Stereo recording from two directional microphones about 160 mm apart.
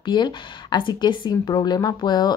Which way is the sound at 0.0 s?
25° left (ahead or behind).